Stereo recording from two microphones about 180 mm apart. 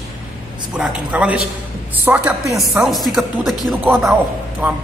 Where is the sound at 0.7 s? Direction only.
5° right (ahead or behind).